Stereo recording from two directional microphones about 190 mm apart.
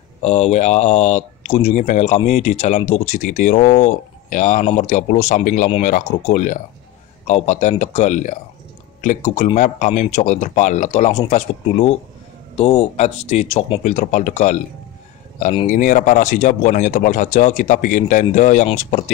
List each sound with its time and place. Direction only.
0.2 s speech: 35° left (ahead or behind)